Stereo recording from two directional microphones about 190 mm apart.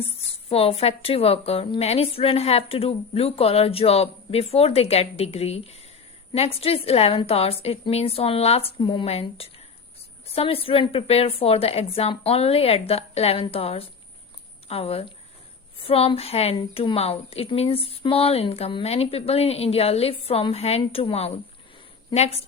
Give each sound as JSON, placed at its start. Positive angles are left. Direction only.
{"t": 0.3, "sound": "a woman's voice", "side_deg": 30}